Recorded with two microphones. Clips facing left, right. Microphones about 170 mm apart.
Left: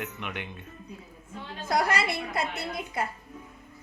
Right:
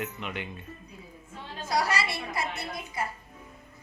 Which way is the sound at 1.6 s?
55° left (ahead or behind).